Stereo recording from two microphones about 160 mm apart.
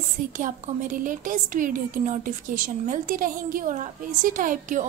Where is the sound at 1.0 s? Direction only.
55° right (ahead or behind).